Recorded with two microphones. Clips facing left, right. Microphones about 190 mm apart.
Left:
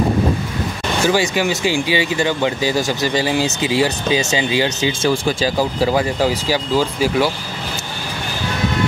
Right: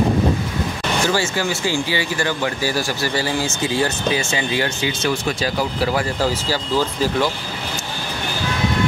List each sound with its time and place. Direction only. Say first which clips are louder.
1.0 s speech: left 5 dB; 15° left (ahead or behind)
5.9 s speech: left 3 dB; 15° left (ahead or behind)